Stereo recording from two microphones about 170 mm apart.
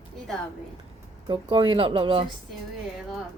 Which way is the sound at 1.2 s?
30° right (ahead or behind).